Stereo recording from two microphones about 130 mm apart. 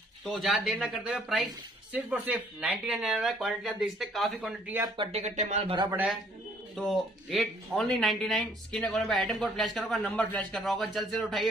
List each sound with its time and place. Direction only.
0.2 s speech: centre (ahead or behind)
4.9 s speech: 40° right (ahead or behind)
5.2 s speech: 60° right (ahead or behind)
6.9 s speech: centre (ahead or behind)